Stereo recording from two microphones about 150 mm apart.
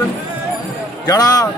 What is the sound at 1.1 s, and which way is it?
Speech, 25° left (ahead or behind).